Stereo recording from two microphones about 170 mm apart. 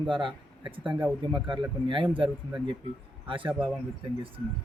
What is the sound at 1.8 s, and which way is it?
Speech, 30° right (ahead or behind).